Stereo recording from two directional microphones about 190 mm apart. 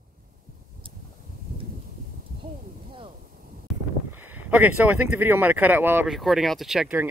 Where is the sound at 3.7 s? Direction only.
Centre (ahead or behind).